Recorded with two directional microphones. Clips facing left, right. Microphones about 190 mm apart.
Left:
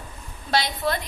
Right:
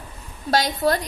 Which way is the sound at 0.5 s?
40° right (ahead or behind).